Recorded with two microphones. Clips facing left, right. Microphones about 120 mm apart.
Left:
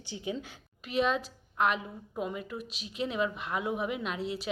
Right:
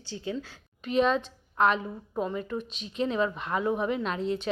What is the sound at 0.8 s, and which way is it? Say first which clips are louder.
A woman's voice: right 4 dB; 5° left (ahead or behind).